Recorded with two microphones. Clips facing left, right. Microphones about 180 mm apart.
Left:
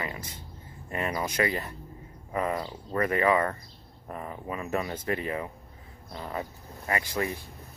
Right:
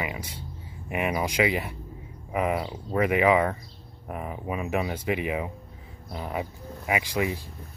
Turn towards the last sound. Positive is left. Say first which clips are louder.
# right 3 dB
turn(degrees=-15)  # may be behind; listen again after turning